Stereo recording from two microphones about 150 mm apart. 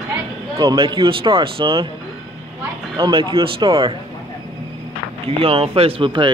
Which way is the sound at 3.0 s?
35° right (ahead or behind).